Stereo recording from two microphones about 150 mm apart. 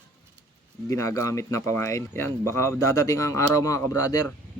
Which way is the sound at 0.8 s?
20° left (ahead or behind).